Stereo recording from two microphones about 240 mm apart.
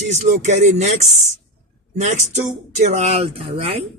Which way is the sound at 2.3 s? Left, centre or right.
Right.